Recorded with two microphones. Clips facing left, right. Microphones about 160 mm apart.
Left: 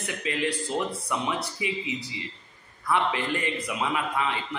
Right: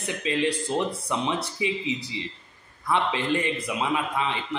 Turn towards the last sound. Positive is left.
turn(degrees=-20)  # may be behind; listen again after turning